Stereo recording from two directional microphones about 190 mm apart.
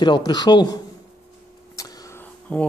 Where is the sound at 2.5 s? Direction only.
5° left (ahead or behind).